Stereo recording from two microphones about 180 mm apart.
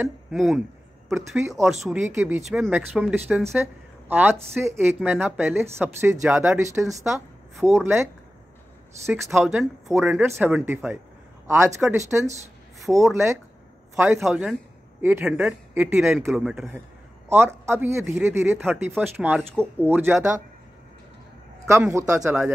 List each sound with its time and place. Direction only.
0.0 s speech: centre (ahead or behind)
9.4 s speech: centre (ahead or behind)
9.8 s a man's voice: 15° right (ahead or behind)
14.2 s speech: 5° right (ahead or behind)
21.6 s speech: 15° right (ahead or behind)